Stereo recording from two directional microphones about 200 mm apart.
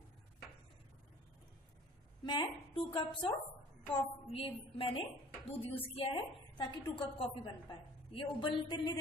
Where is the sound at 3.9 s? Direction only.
30° left (ahead or behind).